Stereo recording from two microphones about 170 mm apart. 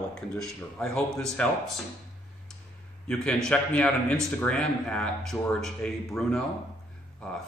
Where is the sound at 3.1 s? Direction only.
5° left (ahead or behind).